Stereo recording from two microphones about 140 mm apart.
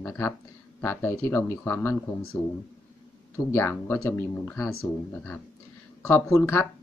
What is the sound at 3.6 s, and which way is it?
Speech, 15° left (ahead or behind).